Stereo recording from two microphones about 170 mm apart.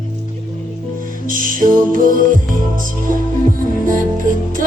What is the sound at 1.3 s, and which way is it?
Music, 55° right (ahead or behind).